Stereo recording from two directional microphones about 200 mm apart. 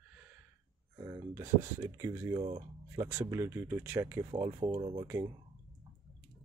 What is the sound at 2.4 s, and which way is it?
Speech, 30° right (ahead or behind).